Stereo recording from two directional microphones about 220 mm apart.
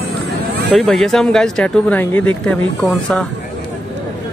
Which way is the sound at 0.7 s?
Centre (ahead or behind).